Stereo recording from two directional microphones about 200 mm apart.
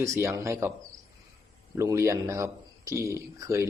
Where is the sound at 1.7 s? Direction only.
15° right (ahead or behind).